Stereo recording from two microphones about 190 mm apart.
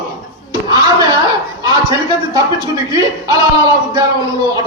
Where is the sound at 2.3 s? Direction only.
20° right (ahead or behind).